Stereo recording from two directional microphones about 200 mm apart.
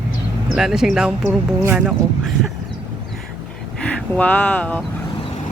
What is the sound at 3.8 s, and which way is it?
Speech, 5° left (ahead or behind).